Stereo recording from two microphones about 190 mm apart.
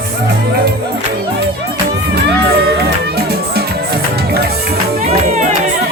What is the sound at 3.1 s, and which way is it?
Music, 55° right (ahead or behind).